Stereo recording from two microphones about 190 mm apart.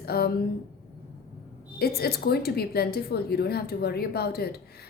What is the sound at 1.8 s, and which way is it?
A woman's voice, 55° left (ahead or behind).